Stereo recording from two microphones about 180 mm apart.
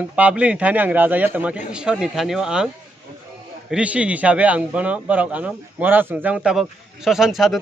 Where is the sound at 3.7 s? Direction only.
5° right (ahead or behind).